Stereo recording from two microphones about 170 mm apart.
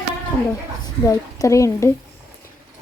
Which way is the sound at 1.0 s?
20° left (ahead or behind).